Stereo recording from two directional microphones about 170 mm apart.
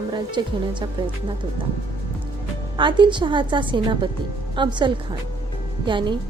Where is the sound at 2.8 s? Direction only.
30° right (ahead or behind).